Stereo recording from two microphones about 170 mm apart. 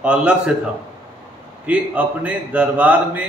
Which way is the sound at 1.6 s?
10° right (ahead or behind).